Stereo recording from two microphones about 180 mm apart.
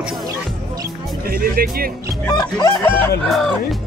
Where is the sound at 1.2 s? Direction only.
55° right (ahead or behind).